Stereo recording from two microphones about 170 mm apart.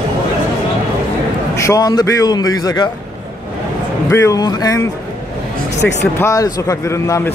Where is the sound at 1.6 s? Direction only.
20° left (ahead or behind).